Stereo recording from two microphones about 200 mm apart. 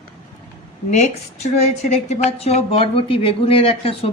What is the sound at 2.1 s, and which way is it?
A woman's voice, 30° left (ahead or behind).